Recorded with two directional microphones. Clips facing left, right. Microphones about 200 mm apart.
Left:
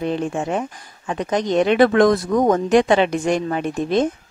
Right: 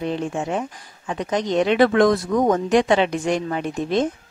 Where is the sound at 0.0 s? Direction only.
50° left (ahead or behind).